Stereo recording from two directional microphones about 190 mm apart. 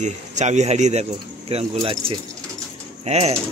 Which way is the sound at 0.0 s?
40° right (ahead or behind).